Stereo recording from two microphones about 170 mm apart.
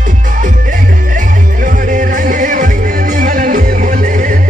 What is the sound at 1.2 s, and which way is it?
Music, 50° right (ahead or behind).